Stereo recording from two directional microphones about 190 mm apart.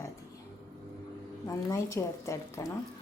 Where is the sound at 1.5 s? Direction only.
15° left (ahead or behind).